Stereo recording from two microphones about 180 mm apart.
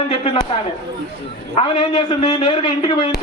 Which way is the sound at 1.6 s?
30° left (ahead or behind).